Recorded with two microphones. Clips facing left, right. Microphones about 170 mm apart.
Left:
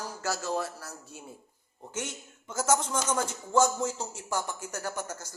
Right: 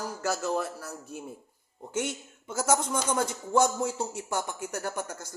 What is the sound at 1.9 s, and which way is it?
A man's voice, 55° right (ahead or behind).